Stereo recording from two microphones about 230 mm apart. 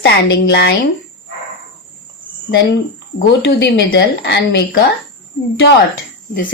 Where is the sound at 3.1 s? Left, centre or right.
Left.